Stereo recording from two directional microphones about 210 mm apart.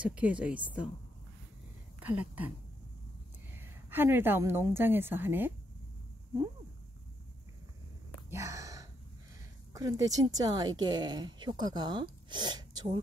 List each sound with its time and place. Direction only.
0.0 s speech: 5° right (ahead or behind)
2.0 s speech: 10° right (ahead or behind)
3.5 s a woman's voice: 10° right (ahead or behind)
8.3 s a sound: 15° right (ahead or behind)
9.8 s a woman's voice: 15° right (ahead or behind)